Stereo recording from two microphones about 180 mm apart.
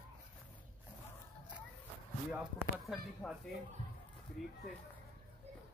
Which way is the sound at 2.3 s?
10° right (ahead or behind).